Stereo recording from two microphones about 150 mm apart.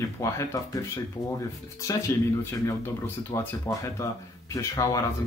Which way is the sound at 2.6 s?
15° left (ahead or behind).